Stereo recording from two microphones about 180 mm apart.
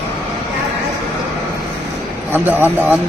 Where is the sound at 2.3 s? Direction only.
10° right (ahead or behind).